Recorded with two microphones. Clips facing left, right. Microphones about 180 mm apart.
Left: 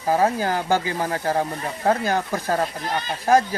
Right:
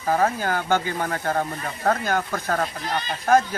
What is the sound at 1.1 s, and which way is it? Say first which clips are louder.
Speech: left 3 dB; 30° left (ahead or behind).